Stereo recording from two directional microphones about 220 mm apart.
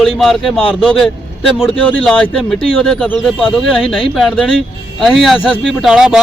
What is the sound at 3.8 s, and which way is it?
Speech, 25° left (ahead or behind).